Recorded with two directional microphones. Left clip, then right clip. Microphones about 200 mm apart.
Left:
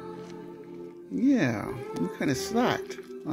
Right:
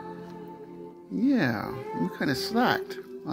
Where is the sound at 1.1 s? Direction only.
10° right (ahead or behind).